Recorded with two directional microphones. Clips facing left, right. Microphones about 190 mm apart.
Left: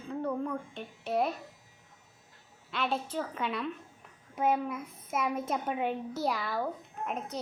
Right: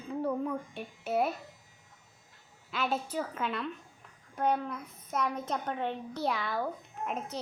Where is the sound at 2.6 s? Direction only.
Centre (ahead or behind).